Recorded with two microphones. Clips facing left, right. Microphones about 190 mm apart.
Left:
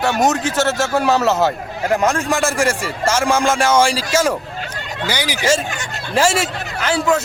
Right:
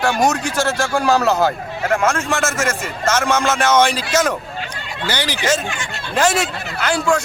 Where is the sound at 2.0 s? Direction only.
15° left (ahead or behind).